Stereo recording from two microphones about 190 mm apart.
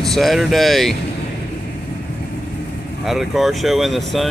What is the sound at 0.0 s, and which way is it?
Speech, centre (ahead or behind).